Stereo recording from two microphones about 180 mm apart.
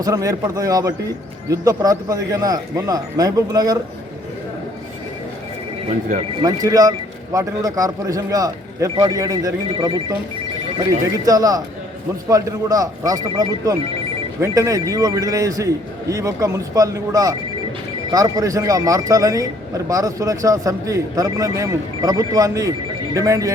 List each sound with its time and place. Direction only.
0.0 s speech: 20° right (ahead or behind)
6.4 s speech: 20° right (ahead or behind)
11.3 s speech: 20° right (ahead or behind)